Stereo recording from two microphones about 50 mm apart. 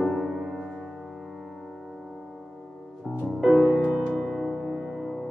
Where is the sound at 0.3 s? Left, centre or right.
Centre.